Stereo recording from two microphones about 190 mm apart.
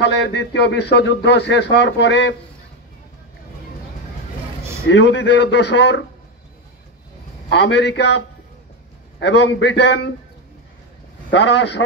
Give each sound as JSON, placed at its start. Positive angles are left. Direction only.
{"t": 0.0, "sound": "speech", "side_deg": 65}
{"t": 4.8, "sound": "a man's voice", "side_deg": 70}
{"t": 7.4, "sound": "speech", "side_deg": 65}
{"t": 9.2, "sound": "speech", "side_deg": 65}
{"t": 11.3, "sound": "speech", "side_deg": 65}